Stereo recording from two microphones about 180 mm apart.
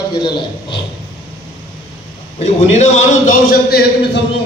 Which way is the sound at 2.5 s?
40° left (ahead or behind).